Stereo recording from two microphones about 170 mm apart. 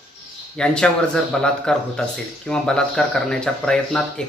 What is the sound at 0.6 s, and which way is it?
Speech, 5° left (ahead or behind).